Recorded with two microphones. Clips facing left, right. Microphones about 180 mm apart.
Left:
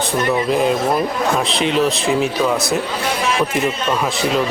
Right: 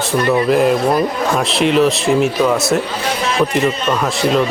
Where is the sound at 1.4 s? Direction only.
Centre (ahead or behind).